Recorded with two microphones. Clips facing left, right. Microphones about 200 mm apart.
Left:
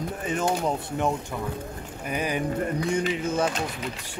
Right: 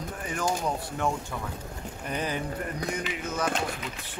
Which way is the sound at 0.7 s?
20° left (ahead or behind).